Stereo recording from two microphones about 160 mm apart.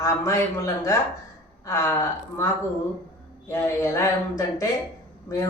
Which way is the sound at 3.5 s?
15° left (ahead or behind).